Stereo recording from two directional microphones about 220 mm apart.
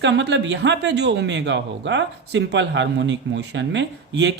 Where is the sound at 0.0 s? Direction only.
55° right (ahead or behind).